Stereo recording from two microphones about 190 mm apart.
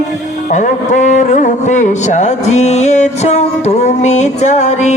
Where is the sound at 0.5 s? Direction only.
40° left (ahead or behind).